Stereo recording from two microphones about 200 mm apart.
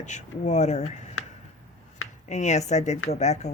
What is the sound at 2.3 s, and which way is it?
Speech, 35° left (ahead or behind).